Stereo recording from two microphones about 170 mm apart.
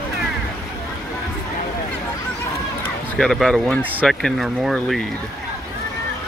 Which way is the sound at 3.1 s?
5° left (ahead or behind).